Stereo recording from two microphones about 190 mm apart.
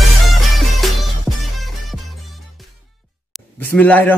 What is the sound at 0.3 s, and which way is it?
Music, centre (ahead or behind).